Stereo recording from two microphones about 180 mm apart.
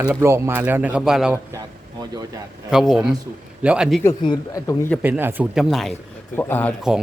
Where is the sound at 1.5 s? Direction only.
20° right (ahead or behind).